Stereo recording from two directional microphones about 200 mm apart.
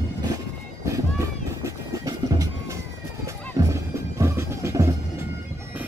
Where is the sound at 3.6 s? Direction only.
20° right (ahead or behind).